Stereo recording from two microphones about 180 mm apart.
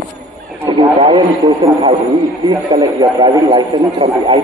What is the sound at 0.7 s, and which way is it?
A man's voice, 25° right (ahead or behind).